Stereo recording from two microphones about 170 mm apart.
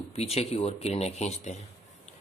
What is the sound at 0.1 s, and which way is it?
Speech, 35° left (ahead or behind).